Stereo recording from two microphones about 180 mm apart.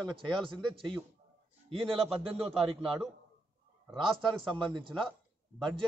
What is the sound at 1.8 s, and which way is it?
A man's voice, centre (ahead or behind).